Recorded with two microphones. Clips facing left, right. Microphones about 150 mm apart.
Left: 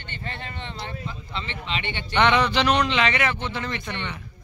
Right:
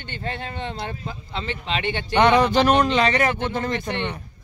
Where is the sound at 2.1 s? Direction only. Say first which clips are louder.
Right 4 dB; 40° right (ahead or behind).